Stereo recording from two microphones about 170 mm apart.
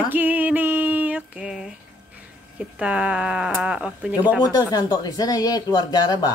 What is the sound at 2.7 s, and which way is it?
Music, 5° right (ahead or behind).